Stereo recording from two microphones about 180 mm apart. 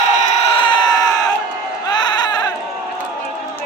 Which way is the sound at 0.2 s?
30° left (ahead or behind).